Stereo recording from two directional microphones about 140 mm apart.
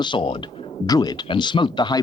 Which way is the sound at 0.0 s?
35° left (ahead or behind).